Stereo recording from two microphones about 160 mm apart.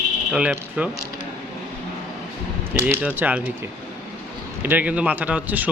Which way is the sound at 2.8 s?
10° right (ahead or behind).